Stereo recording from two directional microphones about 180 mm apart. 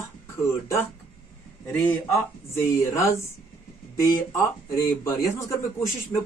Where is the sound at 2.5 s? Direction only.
15° left (ahead or behind).